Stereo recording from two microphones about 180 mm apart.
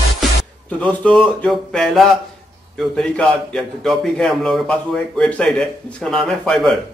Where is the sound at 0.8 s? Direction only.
5° left (ahead or behind).